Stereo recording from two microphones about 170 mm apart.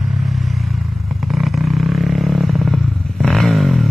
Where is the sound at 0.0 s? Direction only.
Centre (ahead or behind).